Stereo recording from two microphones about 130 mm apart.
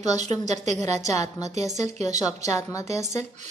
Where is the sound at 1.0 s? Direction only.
25° left (ahead or behind).